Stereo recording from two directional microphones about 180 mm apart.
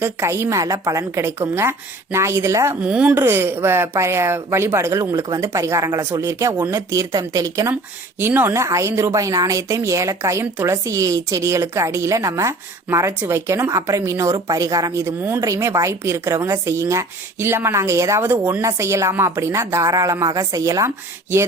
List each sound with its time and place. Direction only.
0.0 s speech: 15° right (ahead or behind)